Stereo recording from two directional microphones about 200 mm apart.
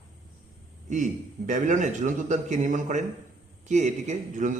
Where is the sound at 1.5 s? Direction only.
40° right (ahead or behind).